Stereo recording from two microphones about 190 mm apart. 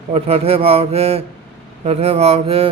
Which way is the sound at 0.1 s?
30° right (ahead or behind).